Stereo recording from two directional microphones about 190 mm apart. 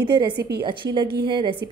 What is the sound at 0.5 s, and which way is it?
A woman's voice, 25° right (ahead or behind).